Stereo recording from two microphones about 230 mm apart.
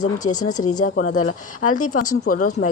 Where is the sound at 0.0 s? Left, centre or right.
Left.